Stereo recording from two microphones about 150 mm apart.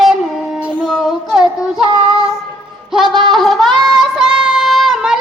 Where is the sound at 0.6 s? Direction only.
5° right (ahead or behind).